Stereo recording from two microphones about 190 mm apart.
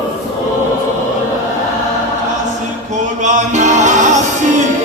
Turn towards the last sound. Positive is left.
turn(degrees=-40)  # may be behind; listen again after turning